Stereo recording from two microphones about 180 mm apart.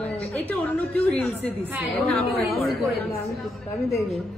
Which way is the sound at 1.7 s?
5° right (ahead or behind).